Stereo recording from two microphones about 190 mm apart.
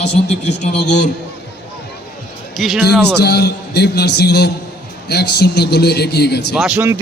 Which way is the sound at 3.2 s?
60° left (ahead or behind).